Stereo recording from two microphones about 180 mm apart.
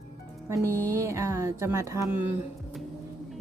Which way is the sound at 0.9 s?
15° right (ahead or behind).